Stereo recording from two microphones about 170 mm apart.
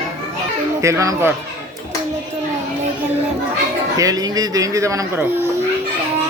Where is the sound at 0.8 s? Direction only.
20° right (ahead or behind).